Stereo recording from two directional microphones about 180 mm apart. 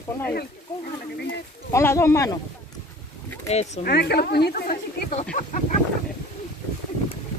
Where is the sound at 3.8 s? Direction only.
60° left (ahead or behind).